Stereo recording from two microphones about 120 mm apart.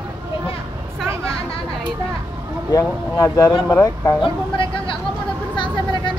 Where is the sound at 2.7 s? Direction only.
30° left (ahead or behind).